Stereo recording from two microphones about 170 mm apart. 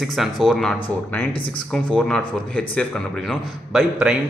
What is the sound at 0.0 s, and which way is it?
Speech, centre (ahead or behind).